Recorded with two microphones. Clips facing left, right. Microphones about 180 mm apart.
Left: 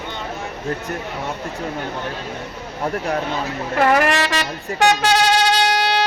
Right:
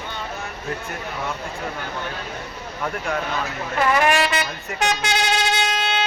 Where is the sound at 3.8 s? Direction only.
65° left (ahead or behind).